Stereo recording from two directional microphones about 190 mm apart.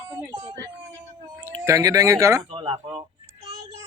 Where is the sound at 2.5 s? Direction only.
30° right (ahead or behind).